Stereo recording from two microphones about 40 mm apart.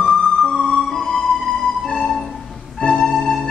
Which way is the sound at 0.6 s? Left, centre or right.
Centre.